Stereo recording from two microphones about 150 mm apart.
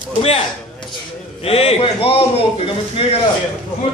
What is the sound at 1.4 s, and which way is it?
A man's voice, 40° left (ahead or behind).